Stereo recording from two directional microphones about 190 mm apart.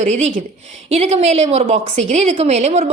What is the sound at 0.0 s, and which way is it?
A woman's voice, 40° right (ahead or behind).